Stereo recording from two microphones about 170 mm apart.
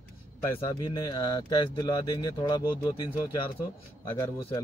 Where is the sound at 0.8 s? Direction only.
20° left (ahead or behind).